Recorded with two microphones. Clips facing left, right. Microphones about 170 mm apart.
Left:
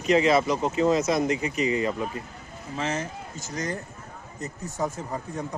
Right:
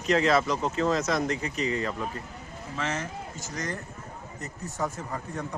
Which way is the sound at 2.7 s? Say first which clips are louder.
Left 3 dB; 30° left (ahead or behind).